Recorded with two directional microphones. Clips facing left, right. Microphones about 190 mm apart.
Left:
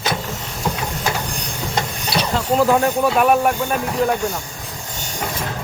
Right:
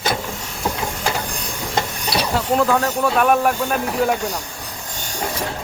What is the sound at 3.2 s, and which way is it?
Speech, 5° left (ahead or behind).